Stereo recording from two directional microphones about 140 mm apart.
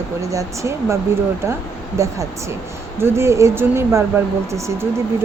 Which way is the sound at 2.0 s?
20° right (ahead or behind).